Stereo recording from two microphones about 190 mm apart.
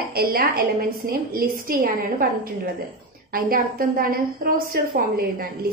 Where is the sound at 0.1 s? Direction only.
50° right (ahead or behind).